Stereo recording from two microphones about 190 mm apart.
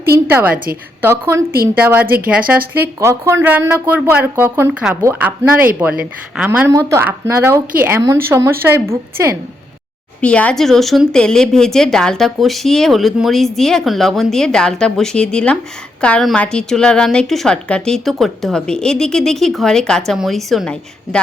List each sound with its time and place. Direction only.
0.3 s speech: 10° right (ahead or behind)
0.5 s a woman's voice: 50° right (ahead or behind)
1.3 s speech: 15° right (ahead or behind)
10.2 s speech: 5° left (ahead or behind)